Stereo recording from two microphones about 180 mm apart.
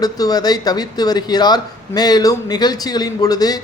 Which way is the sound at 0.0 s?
20° left (ahead or behind).